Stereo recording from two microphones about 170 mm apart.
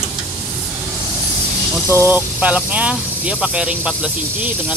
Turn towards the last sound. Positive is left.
turn(degrees=-5)  # may be behind; listen again after turning